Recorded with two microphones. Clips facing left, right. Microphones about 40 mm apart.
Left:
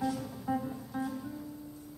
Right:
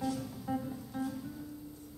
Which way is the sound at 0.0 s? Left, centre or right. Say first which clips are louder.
Left 2 dB; centre.